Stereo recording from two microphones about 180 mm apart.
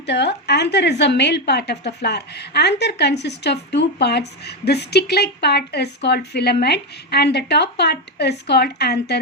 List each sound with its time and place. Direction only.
0.0 s a woman's voice: 70° left (ahead or behind)